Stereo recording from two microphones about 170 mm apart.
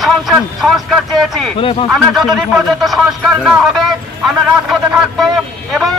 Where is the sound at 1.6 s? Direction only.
30° left (ahead or behind).